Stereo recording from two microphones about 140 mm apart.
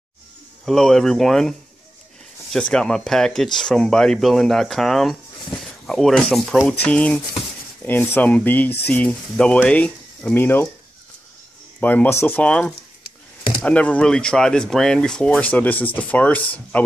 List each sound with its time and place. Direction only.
0.7 s speech: 5° left (ahead or behind)
2.5 s speech: 5° left (ahead or behind)
6.6 s speech: 15° left (ahead or behind)
11.8 s speech: 10° left (ahead or behind)